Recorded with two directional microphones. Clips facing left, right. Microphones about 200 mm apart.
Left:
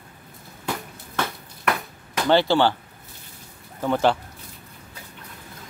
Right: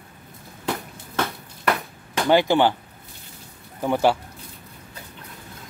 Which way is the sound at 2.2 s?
15° right (ahead or behind).